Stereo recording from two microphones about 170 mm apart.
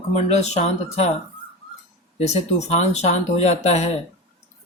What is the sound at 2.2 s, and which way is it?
Speech, 40° left (ahead or behind).